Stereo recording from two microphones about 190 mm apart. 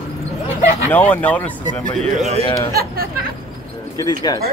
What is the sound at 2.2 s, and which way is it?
Speech, 35° right (ahead or behind).